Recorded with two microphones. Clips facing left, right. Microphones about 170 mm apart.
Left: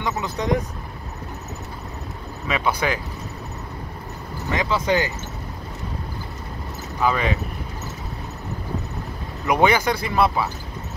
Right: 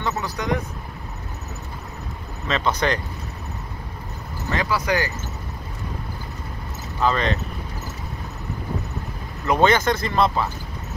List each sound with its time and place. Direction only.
0.0 s vehicle: 20° left (ahead or behind)
2.4 s speech: 10° left (ahead or behind)
4.5 s speech: 20° left (ahead or behind)
7.0 s speech: 10° left (ahead or behind)
9.5 s speech: 10° left (ahead or behind)